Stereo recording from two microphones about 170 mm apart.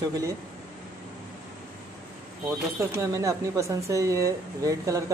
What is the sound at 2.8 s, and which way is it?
A woman's voice, 15° right (ahead or behind).